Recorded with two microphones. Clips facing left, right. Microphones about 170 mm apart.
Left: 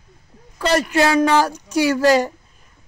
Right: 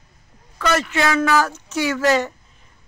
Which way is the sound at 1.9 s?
35° left (ahead or behind).